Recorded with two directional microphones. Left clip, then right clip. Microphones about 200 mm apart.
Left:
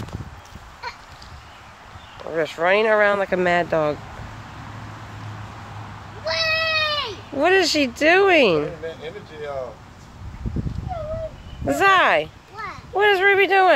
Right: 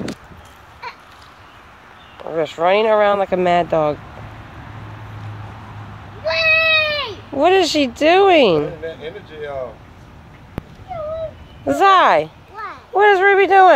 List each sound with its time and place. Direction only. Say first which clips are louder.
2.2 s speech: right 3 dB; 5° right (ahead or behind)
6.2 s cat: right 7 dB; 30° right (ahead or behind)
7.3 s speech: right 4 dB; 10° right (ahead or behind)
8.8 s speech: right 3 dB; 50° right (ahead or behind)
11.6 s speech: right 4 dB; 10° right (ahead or behind)
12.5 s a sound: right 5 dB; centre (ahead or behind)
13.0 s speech: right 4 dB; 10° right (ahead or behind)